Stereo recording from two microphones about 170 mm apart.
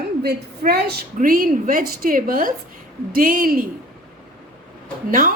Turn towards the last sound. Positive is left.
turn(degrees=-55)  # may be behind; listen again after turning